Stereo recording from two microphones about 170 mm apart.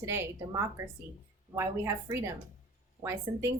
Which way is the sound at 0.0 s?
15° right (ahead or behind).